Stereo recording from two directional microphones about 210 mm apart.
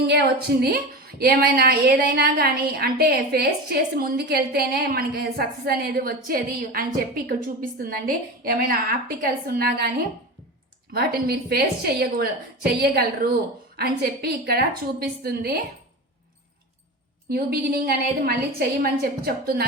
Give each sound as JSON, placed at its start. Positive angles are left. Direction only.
{"t": 0.1, "sound": "a woman's voice", "side_deg": -50}
{"t": 10.9, "sound": "a woman's voice", "side_deg": -50}
{"t": 17.2, "sound": "a woman's voice", "side_deg": -50}